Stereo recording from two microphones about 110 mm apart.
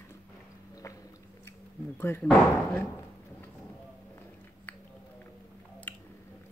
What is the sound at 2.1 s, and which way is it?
Speech, 25° left (ahead or behind).